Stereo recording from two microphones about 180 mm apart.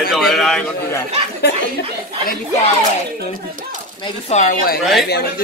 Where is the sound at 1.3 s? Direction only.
60° left (ahead or behind).